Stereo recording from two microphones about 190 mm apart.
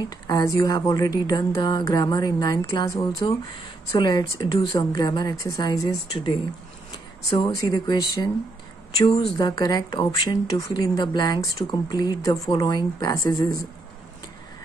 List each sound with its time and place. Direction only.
0.3 s speech: 20° left (ahead or behind)
9.1 s speech: 25° left (ahead or behind)